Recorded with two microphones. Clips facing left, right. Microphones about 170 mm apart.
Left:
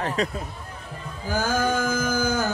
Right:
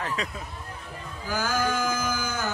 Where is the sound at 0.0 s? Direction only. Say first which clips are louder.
Left 6 dB; 35° left (ahead or behind).